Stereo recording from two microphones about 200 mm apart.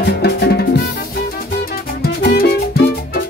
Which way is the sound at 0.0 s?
55° left (ahead or behind).